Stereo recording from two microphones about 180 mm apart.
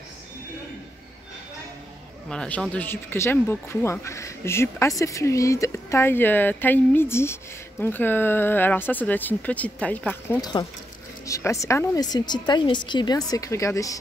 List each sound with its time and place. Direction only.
2.2 s speech: 5° left (ahead or behind)
10.4 s a woman's voice: 20° left (ahead or behind)